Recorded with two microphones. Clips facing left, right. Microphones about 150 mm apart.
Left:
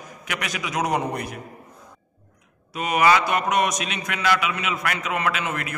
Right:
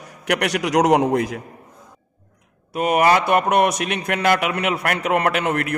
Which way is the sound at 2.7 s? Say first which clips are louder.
Right 3 dB; 55° right (ahead or behind).